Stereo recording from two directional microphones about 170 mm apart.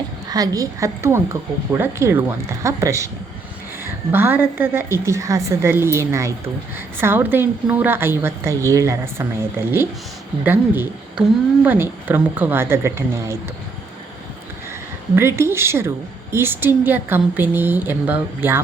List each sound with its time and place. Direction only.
0.3 s a woman's voice: 20° right (ahead or behind)
4.1 s a woman's voice: 10° right (ahead or behind)
15.1 s a woman's voice: 15° right (ahead or behind)